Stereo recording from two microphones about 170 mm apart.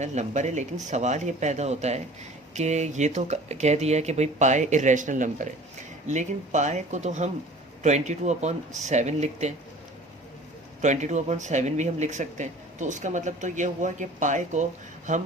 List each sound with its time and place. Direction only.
0.0 s speech: 45° right (ahead or behind)
10.8 s speech: 45° right (ahead or behind)